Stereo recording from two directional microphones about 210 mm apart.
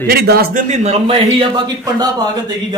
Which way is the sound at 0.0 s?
45° right (ahead or behind).